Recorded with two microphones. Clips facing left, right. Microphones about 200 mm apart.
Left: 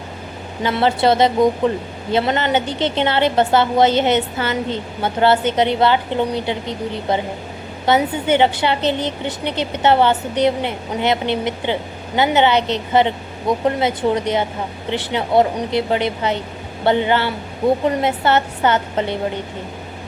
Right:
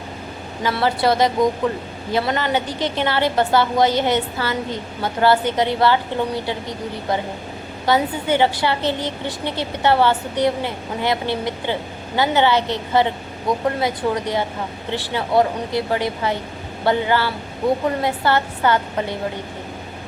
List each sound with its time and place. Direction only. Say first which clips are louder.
0.6 s a woman's voice: left 3 dB; 25° left (ahead or behind)